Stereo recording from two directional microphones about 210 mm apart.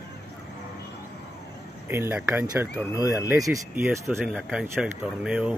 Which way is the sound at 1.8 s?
10° right (ahead or behind).